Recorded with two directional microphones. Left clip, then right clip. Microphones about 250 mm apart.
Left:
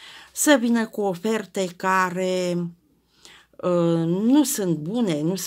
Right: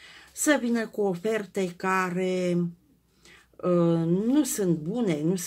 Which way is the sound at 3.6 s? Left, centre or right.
Left.